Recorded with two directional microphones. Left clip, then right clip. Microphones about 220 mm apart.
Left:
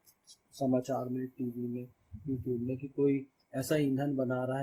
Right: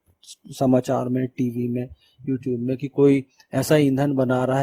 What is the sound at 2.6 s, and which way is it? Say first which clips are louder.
Speech: right 14 dB; 55° right (ahead or behind).